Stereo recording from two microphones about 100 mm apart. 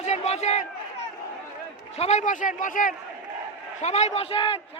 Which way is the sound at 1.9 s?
90° left.